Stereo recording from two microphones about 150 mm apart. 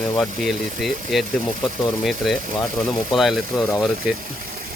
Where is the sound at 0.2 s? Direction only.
Centre (ahead or behind).